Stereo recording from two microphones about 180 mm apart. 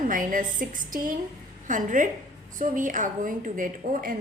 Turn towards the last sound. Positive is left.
turn(degrees=-50)  # may be behind; listen again after turning